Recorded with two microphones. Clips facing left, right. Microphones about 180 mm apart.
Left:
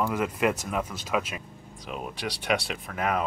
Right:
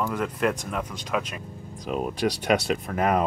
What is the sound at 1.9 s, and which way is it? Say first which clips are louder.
Speech: right 8 dB; 40° right (ahead or behind).